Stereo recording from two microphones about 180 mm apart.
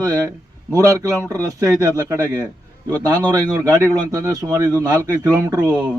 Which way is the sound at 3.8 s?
20° right (ahead or behind).